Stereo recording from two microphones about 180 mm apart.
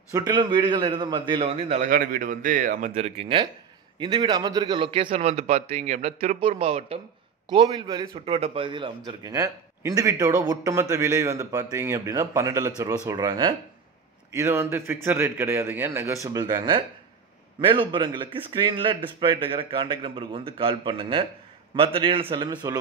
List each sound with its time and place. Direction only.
0.1 s a man's voice: 25° right (ahead or behind)
1.9 s speech: 50° right (ahead or behind)
3.0 s a man's voice: 35° right (ahead or behind)
14.3 s a man's voice: 15° right (ahead or behind)